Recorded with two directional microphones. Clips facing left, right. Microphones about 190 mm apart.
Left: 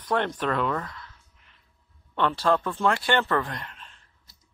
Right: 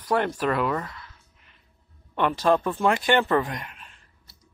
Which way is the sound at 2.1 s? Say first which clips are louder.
Right 2 dB; 15° right (ahead or behind).